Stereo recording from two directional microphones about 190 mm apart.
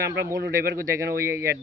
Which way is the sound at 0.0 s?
15° right (ahead or behind).